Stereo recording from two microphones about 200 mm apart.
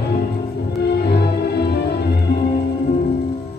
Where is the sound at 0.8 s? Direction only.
55° left (ahead or behind).